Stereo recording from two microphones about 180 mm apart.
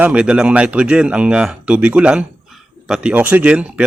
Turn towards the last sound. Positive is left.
turn(degrees=-5)  # may be behind; listen again after turning